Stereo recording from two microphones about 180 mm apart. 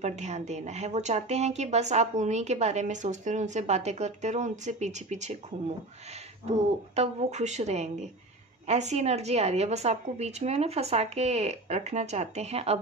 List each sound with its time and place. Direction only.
0.0 s a woman's voice: 40° right (ahead or behind)
6.5 s a woman's voice: 35° right (ahead or behind)